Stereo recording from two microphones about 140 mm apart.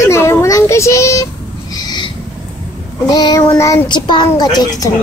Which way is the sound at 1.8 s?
30° left (ahead or behind).